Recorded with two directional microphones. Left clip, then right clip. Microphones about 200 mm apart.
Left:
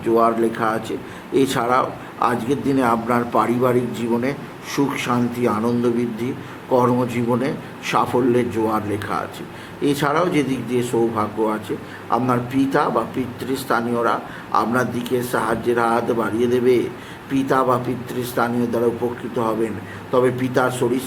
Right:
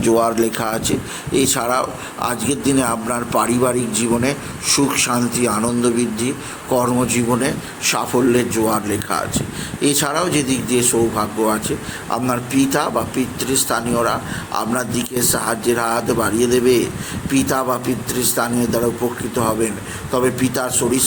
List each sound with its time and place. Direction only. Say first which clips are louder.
0.1 s a man's voice: even; 20° right (ahead or behind)
20.1 s a man's voice: even; 10° right (ahead or behind)